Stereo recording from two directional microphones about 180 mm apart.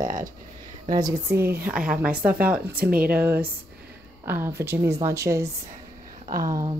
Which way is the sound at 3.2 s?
10° right (ahead or behind).